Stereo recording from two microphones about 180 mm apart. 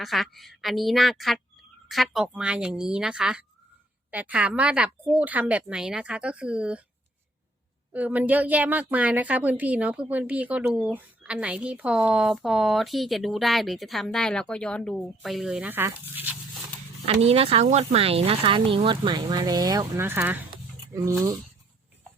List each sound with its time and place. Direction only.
0.0 s a woman's voice: centre (ahead or behind)
7.9 s a woman's voice: 10° right (ahead or behind)
17.2 s speech: 35° right (ahead or behind); by 21.3 s 20° right (ahead or behind)